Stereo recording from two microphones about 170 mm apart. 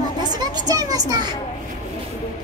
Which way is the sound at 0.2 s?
25° right (ahead or behind).